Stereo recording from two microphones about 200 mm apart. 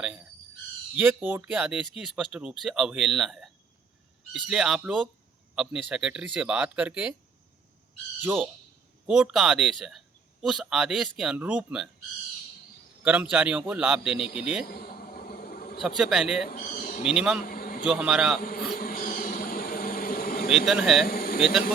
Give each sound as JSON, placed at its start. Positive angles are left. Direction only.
{"t": 0.0, "sound": "speech", "side_deg": -5}
{"t": 8.2, "sound": "speech", "side_deg": -10}
{"t": 13.3, "sound": "speech", "side_deg": -5}
{"t": 14.7, "sound": "a sound", "side_deg": 50}
{"t": 16.0, "sound": "speech", "side_deg": -5}
{"t": 16.5, "sound": "bird", "side_deg": 45}
{"t": 17.0, "sound": "speech", "side_deg": -5}
{"t": 17.4, "sound": "a sound", "side_deg": 50}
{"t": 17.8, "sound": "speech", "side_deg": -5}
{"t": 18.3, "sound": "insect", "side_deg": 50}
{"t": 20.7, "sound": "speech", "side_deg": 0}
{"t": 21.1, "sound": "a sound", "side_deg": 50}